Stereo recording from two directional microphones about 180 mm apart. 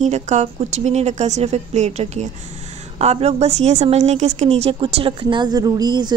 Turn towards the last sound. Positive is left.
turn(degrees=-25)  # may be behind; listen again after turning